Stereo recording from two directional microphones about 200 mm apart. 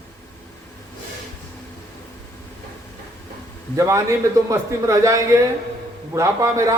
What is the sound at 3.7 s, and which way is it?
A man's voice, 15° right (ahead or behind).